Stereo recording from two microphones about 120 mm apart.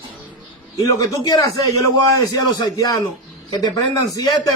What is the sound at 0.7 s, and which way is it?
A man's voice, 30° left (ahead or behind).